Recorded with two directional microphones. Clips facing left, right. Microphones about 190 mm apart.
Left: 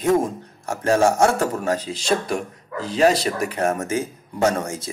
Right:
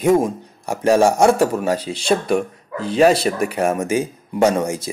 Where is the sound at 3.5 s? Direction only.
10° right (ahead or behind).